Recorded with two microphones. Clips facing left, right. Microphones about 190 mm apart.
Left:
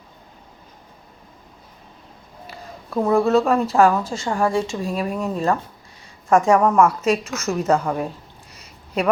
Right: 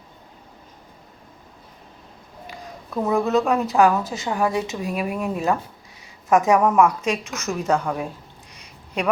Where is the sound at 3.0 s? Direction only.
Centre (ahead or behind).